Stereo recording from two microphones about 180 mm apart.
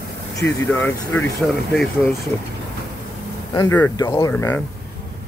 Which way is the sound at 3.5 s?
15° left (ahead or behind).